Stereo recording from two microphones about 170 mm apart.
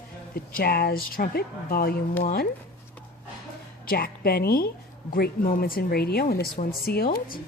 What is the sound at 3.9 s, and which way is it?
A woman's voice, 65° left (ahead or behind).